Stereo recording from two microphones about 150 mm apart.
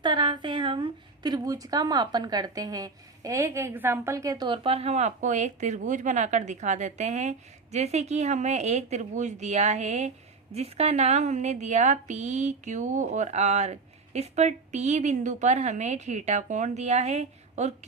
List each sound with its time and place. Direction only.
0.0 s a woman's voice: 30° right (ahead or behind); by 17.7 s 50° right (ahead or behind)